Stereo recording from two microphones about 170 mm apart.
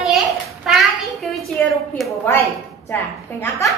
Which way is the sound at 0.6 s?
Centre (ahead or behind).